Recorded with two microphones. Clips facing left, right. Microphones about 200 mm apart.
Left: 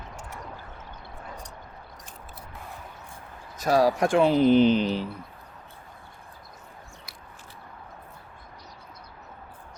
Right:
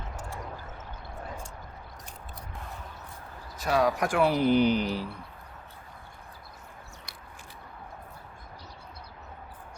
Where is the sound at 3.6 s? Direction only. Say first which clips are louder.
Left 4 dB; 35° left (ahead or behind); by 5.1 s 20° left (ahead or behind).